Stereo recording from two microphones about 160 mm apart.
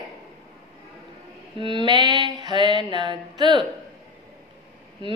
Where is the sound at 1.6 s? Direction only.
30° right (ahead or behind).